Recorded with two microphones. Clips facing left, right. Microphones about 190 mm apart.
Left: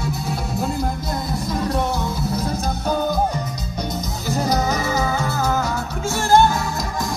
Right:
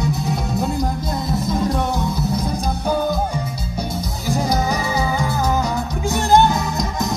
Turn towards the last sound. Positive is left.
turn(degrees=-20)  # may be behind; listen again after turning